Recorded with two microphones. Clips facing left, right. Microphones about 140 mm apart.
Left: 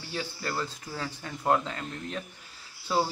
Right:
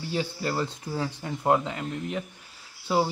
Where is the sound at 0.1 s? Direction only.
20° right (ahead or behind).